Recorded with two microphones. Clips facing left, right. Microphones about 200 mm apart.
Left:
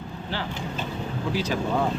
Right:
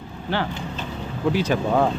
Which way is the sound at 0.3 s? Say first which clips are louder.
Right 5 dB; 60° right (ahead or behind).